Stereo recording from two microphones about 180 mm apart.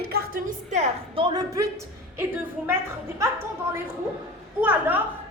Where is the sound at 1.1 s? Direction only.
25° right (ahead or behind).